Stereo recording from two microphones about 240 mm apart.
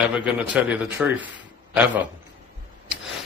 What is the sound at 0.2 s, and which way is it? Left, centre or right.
Speech, centre.